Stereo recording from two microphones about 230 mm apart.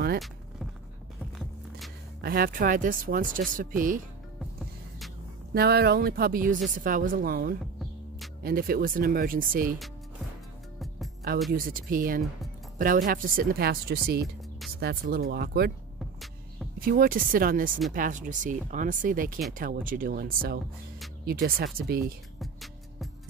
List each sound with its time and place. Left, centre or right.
2.2 s speech: right
5.5 s speech: right
11.5 s speech: right
16.8 s speech: right
22.4 s music: centre